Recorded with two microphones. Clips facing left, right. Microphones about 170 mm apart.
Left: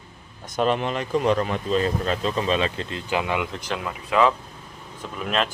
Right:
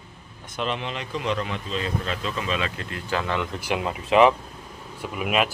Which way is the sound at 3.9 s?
20° right (ahead or behind).